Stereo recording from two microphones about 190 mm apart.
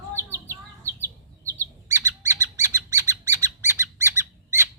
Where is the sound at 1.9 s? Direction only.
15° right (ahead or behind).